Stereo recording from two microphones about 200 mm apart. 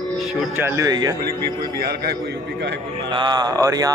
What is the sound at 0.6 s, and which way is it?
Speech, 15° right (ahead or behind).